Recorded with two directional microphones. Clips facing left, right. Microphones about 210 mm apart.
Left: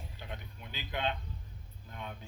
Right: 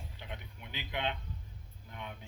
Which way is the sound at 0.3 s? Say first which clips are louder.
Left 1 dB; 20° right (ahead or behind).